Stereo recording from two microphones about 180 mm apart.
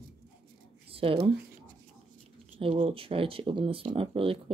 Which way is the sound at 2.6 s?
30° right (ahead or behind).